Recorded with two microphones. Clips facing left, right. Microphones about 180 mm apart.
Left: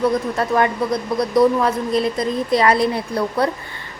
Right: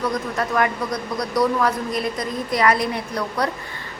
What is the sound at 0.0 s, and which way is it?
Speech, 30° left (ahead or behind).